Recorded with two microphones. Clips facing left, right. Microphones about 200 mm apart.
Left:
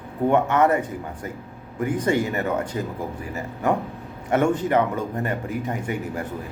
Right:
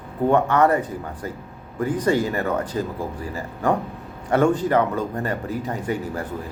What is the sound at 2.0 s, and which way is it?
Speech, 25° left (ahead or behind).